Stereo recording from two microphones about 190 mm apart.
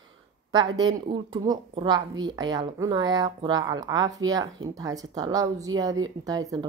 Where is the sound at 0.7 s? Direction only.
20° right (ahead or behind).